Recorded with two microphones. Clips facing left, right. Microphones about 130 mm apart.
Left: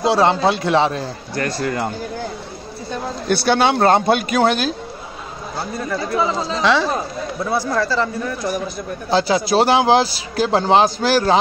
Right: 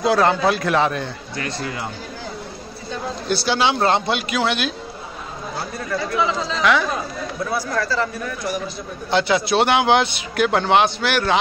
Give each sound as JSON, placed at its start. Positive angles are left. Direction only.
{"t": 0.0, "sound": "speech", "side_deg": 30}
{"t": 3.3, "sound": "a man's voice", "side_deg": 50}
{"t": 6.1, "sound": "speech", "side_deg": 35}
{"t": 9.1, "sound": "speech", "side_deg": 35}